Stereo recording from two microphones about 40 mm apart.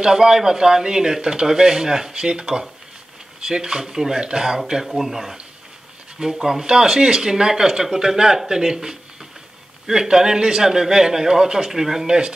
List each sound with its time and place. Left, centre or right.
0.0 s speech: centre